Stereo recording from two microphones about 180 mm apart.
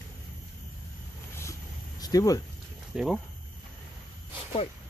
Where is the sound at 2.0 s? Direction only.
20° left (ahead or behind).